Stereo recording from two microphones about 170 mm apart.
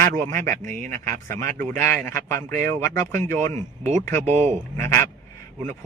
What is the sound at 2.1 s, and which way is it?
Speech, 15° left (ahead or behind).